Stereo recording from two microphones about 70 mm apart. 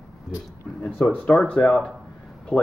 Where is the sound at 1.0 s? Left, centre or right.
Centre.